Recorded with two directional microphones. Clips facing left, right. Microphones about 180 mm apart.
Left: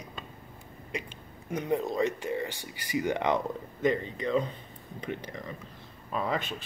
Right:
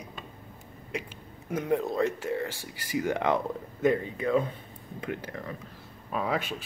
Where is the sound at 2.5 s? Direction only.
90° right.